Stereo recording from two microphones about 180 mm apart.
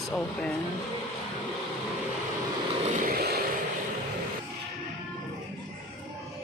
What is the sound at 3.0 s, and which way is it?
Vehicle, 60° right (ahead or behind).